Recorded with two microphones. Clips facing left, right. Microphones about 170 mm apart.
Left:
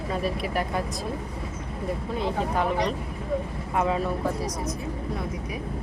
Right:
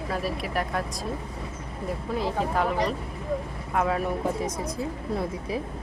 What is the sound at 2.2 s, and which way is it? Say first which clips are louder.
Speech: even; centre (ahead or behind).